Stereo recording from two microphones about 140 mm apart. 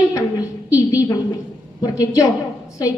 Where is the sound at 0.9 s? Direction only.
25° left (ahead or behind).